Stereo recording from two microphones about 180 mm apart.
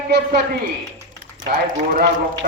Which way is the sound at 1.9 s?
55° right (ahead or behind).